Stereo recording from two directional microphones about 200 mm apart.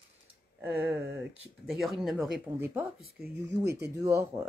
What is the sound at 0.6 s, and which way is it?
Speech, 5° right (ahead or behind).